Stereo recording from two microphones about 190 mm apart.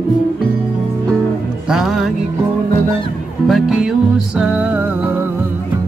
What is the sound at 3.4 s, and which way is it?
Music, centre (ahead or behind).